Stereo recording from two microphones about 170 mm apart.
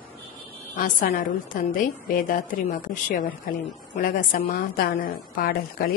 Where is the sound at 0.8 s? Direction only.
50° left (ahead or behind).